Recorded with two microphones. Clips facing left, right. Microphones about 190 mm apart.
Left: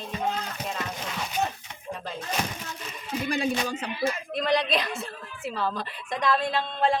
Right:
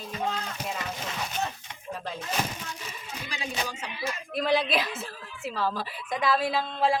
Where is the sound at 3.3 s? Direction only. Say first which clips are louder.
Left 6 dB; 55° left (ahead or behind).